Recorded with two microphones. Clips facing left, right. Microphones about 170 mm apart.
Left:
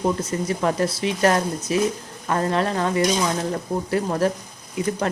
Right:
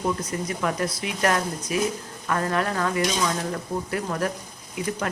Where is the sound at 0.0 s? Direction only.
25° left (ahead or behind).